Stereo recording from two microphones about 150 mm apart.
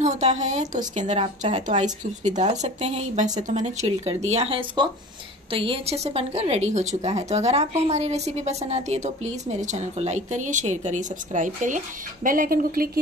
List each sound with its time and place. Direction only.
0.0 s speech: 50° right (ahead or behind); by 13.0 s 80° right